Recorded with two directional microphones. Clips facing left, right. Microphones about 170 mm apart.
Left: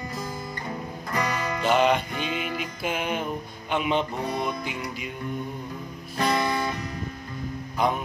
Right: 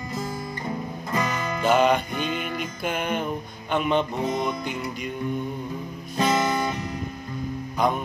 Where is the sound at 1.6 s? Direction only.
Centre (ahead or behind).